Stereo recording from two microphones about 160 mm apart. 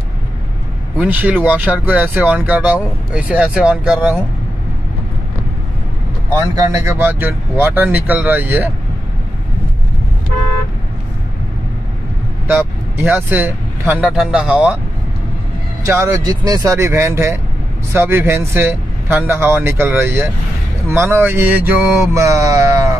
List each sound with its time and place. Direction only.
0.9 s speech: 10° right (ahead or behind)
6.3 s speech: 20° right (ahead or behind)
12.4 s speech: 15° right (ahead or behind)
15.8 s speech: 25° right (ahead or behind)